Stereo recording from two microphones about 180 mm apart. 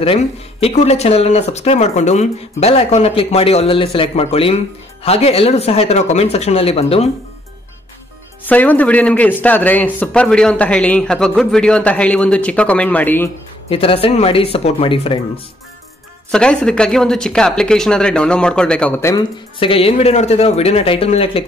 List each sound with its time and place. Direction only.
0.0 s speech: 35° left (ahead or behind)
8.5 s a man's voice: 10° left (ahead or behind)
13.7 s speech: 30° left (ahead or behind)
16.3 s a woman's voice: 5° left (ahead or behind)
19.6 s speech: 30° left (ahead or behind)